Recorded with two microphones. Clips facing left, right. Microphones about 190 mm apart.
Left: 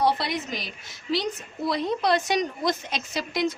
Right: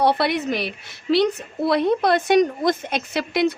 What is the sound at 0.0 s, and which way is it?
A woman's voice, 60° right (ahead or behind).